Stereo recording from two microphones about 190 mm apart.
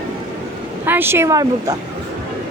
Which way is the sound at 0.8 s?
10° right (ahead or behind).